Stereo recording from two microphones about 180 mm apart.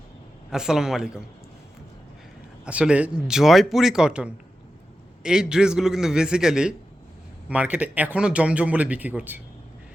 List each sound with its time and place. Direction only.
0.5 s speech: 5° right (ahead or behind)
2.6 s speech: 5° right (ahead or behind)